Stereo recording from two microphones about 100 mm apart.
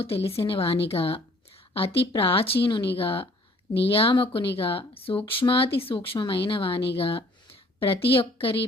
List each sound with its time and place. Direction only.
0.4 s speech: 65° left (ahead or behind)